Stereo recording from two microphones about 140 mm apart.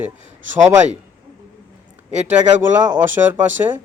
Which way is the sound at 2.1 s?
55° right (ahead or behind).